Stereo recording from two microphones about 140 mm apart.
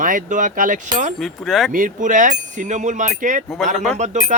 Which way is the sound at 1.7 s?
70° right (ahead or behind).